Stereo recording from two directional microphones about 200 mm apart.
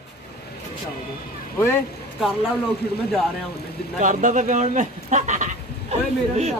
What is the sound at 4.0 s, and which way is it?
Speech, 40° right (ahead or behind).